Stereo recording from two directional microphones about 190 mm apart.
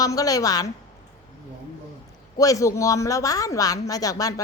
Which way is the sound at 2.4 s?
15° left (ahead or behind).